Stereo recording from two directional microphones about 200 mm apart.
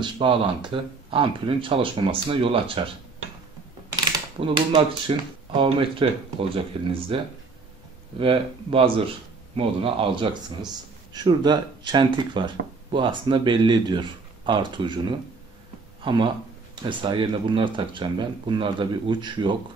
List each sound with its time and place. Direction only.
0.0 s speech: 25° right (ahead or behind)
3.9 s mechanisms: 25° right (ahead or behind)
5.0 s speech: 25° right (ahead or behind)
8.2 s speech: 25° right (ahead or behind)